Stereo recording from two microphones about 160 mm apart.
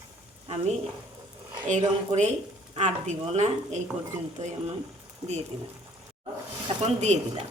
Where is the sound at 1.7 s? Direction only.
45° right (ahead or behind).